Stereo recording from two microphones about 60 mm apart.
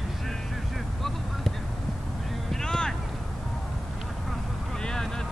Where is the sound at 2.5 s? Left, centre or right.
Centre.